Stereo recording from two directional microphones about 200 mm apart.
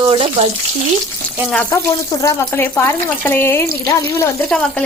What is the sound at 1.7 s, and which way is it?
A woman's voice, 15° left (ahead or behind).